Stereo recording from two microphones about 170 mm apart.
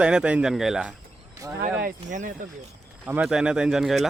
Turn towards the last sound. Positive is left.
turn(degrees=0)  # may be behind; listen again after turning